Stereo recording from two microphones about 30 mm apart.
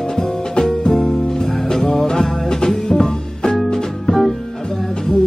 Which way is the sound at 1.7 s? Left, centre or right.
Centre.